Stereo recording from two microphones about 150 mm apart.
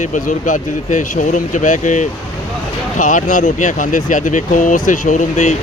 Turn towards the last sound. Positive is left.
turn(degrees=55)  # may be behind; listen again after turning